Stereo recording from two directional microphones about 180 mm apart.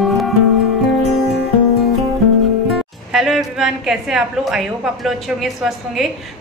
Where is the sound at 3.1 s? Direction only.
Centre (ahead or behind).